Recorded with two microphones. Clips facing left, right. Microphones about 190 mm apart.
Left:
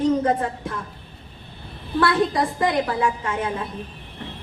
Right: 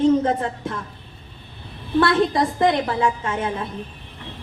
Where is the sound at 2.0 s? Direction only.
25° right (ahead or behind).